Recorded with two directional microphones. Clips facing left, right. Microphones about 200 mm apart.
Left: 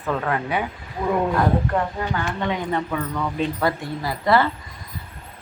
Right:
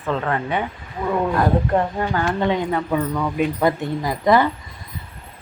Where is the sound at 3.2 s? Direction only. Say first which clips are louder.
Right 3 dB; 10° right (ahead or behind).